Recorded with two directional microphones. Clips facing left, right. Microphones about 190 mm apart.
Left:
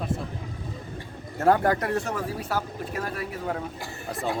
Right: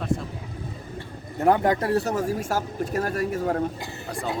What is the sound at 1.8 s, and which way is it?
Speech, 35° right (ahead or behind).